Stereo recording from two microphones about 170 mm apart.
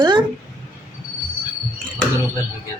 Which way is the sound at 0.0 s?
25° right (ahead or behind).